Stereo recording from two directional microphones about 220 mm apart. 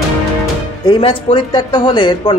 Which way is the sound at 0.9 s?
25° left (ahead or behind).